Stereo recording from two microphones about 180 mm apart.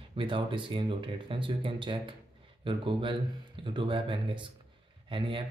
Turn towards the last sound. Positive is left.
turn(degrees=-30)  # may be behind; listen again after turning